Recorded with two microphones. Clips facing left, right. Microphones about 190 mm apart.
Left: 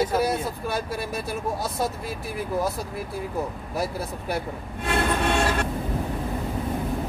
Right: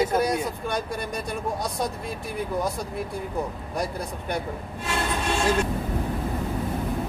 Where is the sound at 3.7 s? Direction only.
5° left (ahead or behind).